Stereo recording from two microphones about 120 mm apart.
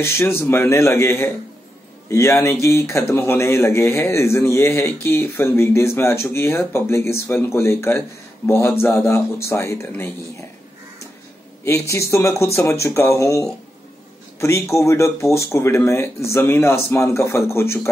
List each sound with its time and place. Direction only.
0.0 s speech: 20° left (ahead or behind)
11.9 s speech: 25° left (ahead or behind)